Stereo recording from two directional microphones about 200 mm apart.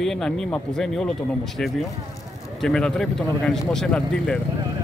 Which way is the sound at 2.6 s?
5° left (ahead or behind).